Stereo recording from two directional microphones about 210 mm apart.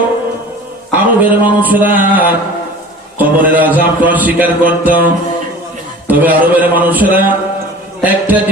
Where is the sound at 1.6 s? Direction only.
10° right (ahead or behind).